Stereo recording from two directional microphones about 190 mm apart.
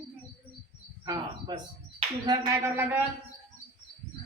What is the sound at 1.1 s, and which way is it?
A man's voice, 20° right (ahead or behind).